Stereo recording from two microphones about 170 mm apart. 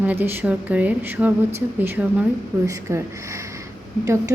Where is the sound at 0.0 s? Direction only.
10° right (ahead or behind).